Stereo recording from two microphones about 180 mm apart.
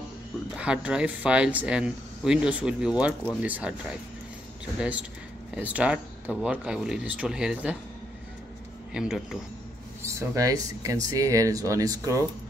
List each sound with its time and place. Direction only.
0.6 s speech: 5° right (ahead or behind)
5.5 s speech: 10° right (ahead or behind)
8.9 s speech: 5° right (ahead or behind)
10.0 s speech: 15° right (ahead or behind)